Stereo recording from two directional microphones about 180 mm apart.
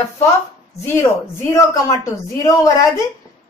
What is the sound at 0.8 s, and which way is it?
A woman's voice, 15° left (ahead or behind).